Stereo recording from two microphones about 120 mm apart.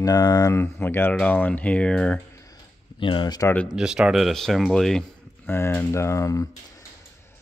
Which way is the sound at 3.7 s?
5° right (ahead or behind).